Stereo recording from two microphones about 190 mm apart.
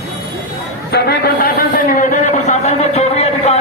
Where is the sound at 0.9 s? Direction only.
55° left (ahead or behind).